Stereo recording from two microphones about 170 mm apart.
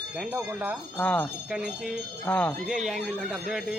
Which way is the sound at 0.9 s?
10° left (ahead or behind).